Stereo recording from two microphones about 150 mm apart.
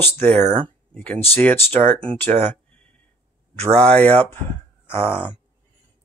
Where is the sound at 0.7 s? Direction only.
10° left (ahead or behind).